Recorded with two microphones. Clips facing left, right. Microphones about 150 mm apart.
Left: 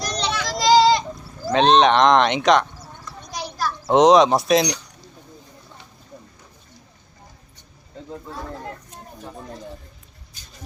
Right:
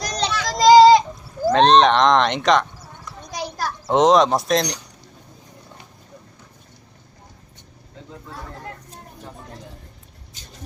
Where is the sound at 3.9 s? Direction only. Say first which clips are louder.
Left 2 dB; centre (ahead or behind).